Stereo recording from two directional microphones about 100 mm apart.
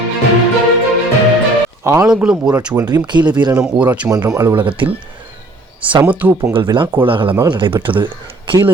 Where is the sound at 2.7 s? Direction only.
40° right (ahead or behind).